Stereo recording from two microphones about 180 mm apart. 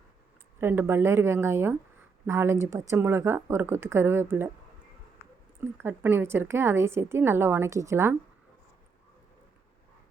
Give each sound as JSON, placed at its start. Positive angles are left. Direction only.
{"t": 0.6, "sound": "a woman's voice", "side_deg": -10}
{"t": 5.5, "sound": "a woman's voice", "side_deg": -10}